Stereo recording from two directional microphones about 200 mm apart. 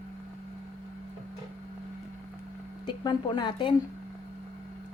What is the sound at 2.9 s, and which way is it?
Speech, 25° left (ahead or behind).